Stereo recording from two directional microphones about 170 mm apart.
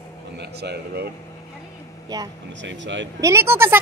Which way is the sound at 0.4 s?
75° right (ahead or behind).